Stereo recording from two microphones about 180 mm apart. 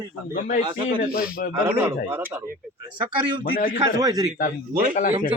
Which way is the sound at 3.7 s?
20° right (ahead or behind).